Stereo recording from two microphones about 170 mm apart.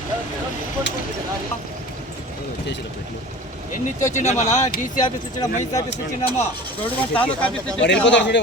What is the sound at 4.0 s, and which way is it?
Speech, 45° left (ahead or behind).